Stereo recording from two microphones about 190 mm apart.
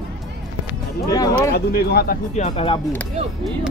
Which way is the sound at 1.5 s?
55° left (ahead or behind).